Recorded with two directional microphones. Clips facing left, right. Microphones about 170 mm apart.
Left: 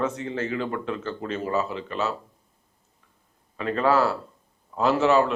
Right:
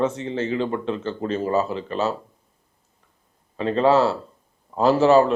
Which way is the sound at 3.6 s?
25° right (ahead or behind).